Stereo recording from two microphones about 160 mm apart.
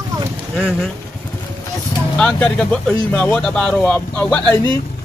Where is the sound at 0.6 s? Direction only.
Centre (ahead or behind).